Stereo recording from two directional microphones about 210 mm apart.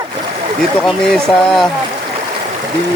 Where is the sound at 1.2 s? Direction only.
Centre (ahead or behind).